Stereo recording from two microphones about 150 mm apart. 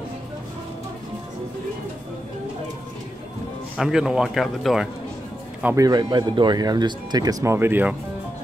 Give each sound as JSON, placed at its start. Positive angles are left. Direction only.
{"t": 3.7, "sound": "speech", "side_deg": -5}
{"t": 5.8, "sound": "speech", "side_deg": -25}